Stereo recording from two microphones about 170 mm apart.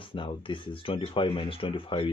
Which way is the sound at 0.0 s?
30° left (ahead or behind).